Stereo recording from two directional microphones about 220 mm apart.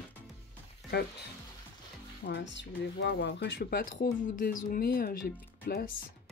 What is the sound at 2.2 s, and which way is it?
Speech, 55° left (ahead or behind).